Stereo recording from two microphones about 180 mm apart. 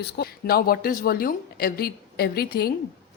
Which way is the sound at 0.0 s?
60° left (ahead or behind).